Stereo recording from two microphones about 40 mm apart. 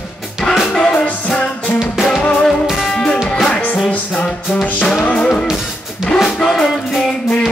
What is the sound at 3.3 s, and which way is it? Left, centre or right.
Music, centre.